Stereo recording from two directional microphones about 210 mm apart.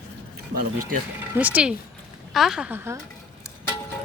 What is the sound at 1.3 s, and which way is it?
Speech, 5° right (ahead or behind).